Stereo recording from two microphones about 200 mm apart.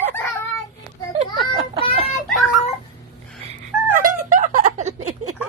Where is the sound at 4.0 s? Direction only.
40° right (ahead or behind).